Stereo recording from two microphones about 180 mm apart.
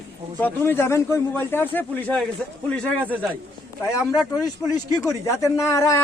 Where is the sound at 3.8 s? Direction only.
15° left (ahead or behind).